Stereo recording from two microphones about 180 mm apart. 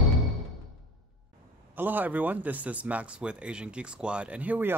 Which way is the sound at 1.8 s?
10° right (ahead or behind).